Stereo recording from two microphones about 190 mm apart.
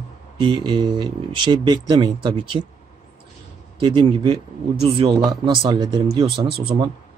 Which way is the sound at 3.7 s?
25° right (ahead or behind).